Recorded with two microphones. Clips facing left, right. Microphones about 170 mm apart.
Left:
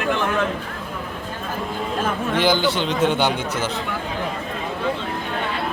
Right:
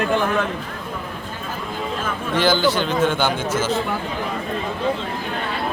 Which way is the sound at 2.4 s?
15° left (ahead or behind).